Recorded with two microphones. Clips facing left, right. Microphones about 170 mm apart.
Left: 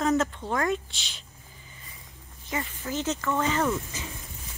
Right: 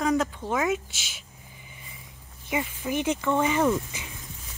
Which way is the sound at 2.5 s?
10° right (ahead or behind).